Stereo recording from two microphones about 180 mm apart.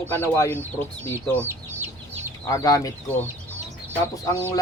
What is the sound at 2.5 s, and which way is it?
Speech, 20° left (ahead or behind).